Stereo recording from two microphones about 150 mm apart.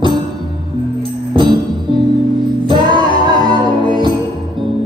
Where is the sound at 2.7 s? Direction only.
30° right (ahead or behind).